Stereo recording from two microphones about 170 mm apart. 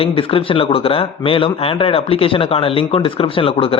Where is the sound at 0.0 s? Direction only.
35° left (ahead or behind).